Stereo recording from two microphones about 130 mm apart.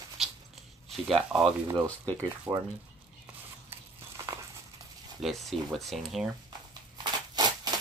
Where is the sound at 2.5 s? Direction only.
20° right (ahead or behind).